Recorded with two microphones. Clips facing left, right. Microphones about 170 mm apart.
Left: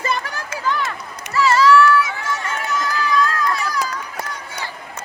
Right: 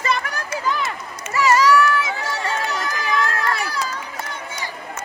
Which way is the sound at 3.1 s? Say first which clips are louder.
Left 1 dB; 70° right (ahead or behind).